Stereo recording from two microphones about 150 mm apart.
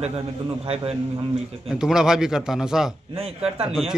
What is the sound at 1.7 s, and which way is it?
A man's voice, 5° right (ahead or behind).